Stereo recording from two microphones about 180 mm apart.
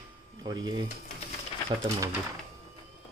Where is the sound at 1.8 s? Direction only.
20° right (ahead or behind).